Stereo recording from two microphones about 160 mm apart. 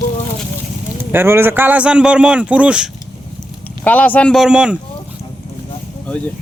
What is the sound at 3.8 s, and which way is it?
Speech, 10° left (ahead or behind).